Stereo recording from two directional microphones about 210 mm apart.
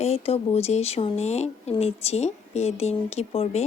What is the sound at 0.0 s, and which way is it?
Speech, 30° left (ahead or behind).